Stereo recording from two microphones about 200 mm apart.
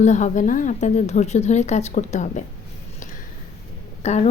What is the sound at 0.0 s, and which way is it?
Speech, 35° left (ahead or behind).